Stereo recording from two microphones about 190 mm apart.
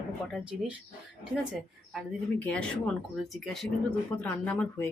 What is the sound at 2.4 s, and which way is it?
Speech, 5° left (ahead or behind).